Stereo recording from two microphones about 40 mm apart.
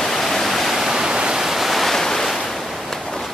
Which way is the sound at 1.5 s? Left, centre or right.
Centre.